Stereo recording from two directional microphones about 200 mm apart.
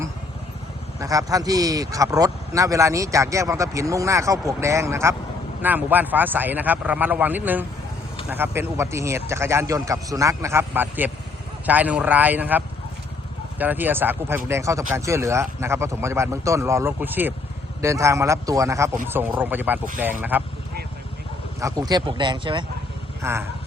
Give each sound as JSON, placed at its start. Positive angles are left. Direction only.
{"t": 0.9, "sound": "speech", "side_deg": -15}
{"t": 21.6, "sound": "speech", "side_deg": -20}
{"t": 23.2, "sound": "speech", "side_deg": -10}